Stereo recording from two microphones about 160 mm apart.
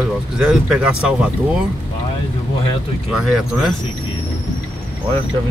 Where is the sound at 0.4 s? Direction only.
5° right (ahead or behind).